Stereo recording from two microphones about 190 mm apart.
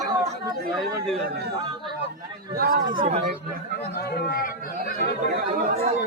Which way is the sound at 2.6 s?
55° right (ahead or behind).